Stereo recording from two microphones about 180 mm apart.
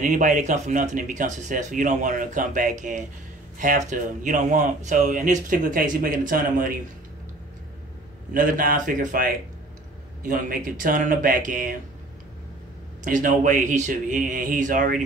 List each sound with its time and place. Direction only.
0.0 s speech: 45° right (ahead or behind)
8.3 s speech: 50° right (ahead or behind)
13.0 s speech: 45° right (ahead or behind)